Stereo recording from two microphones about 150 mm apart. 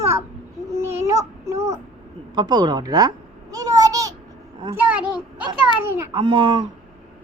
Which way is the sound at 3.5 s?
25° right (ahead or behind).